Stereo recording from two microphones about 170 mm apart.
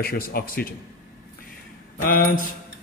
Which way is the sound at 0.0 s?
60° left (ahead or behind).